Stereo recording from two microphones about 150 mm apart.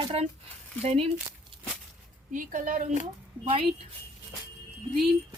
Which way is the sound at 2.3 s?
60° right (ahead or behind).